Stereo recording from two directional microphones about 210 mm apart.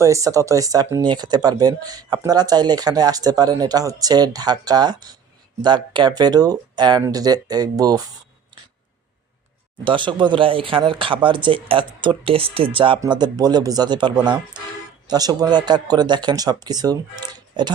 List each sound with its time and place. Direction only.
0.0 s speech: 15° right (ahead or behind)
9.8 s speech: 25° right (ahead or behind)